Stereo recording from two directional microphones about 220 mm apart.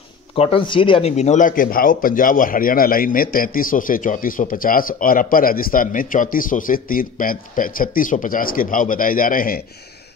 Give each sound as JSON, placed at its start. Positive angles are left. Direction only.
{"t": 0.4, "sound": "speech", "side_deg": 25}